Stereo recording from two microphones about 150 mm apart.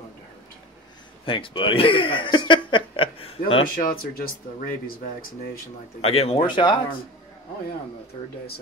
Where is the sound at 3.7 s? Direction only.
70° left (ahead or behind).